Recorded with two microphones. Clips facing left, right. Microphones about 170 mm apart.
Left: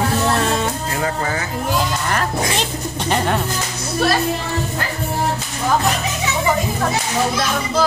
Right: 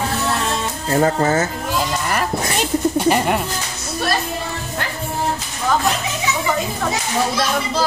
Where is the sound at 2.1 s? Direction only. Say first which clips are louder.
Even; 5° right (ahead or behind).